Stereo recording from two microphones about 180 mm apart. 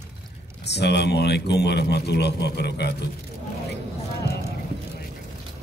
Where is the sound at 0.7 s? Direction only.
70° left (ahead or behind).